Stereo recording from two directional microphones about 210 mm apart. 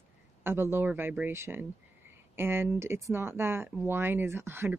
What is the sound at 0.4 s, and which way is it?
Speech, 10° right (ahead or behind).